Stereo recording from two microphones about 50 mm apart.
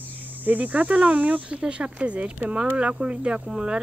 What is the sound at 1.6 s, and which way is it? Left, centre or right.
Speech, right.